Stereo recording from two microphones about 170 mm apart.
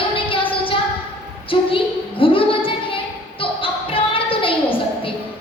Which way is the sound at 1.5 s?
30° left (ahead or behind).